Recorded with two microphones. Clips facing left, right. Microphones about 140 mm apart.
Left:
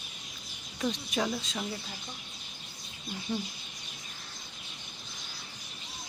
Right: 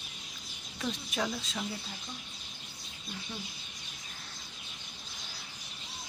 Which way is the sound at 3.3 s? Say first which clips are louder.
Left 11 dB; 30° left (ahead or behind).